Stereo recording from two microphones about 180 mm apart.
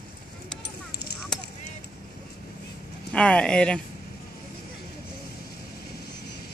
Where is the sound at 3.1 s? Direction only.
5° left (ahead or behind).